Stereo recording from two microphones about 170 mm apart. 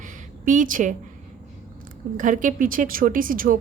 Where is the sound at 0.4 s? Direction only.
50° right (ahead or behind).